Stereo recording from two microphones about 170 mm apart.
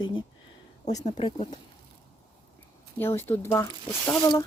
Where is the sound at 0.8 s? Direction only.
40° left (ahead or behind).